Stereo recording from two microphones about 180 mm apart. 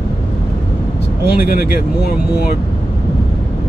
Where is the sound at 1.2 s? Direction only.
60° left (ahead or behind).